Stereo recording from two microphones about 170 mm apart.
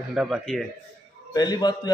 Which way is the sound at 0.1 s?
Centre (ahead or behind).